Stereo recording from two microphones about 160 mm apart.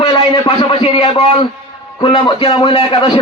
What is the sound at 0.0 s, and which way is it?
A man's voice, 35° left (ahead or behind).